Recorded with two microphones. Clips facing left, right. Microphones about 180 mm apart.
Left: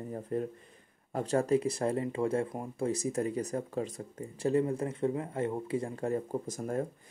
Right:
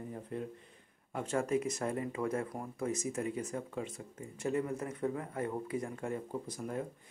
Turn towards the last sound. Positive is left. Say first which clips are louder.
# left 5 dB
turn(degrees=45)  # may be behind; listen again after turning